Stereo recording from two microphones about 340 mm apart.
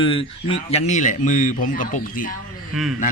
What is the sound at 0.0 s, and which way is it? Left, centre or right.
Speech, centre.